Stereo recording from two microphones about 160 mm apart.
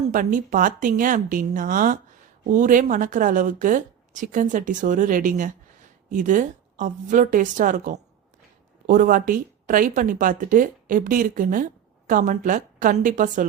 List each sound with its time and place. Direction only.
0.1 s speech: 55° right (ahead or behind)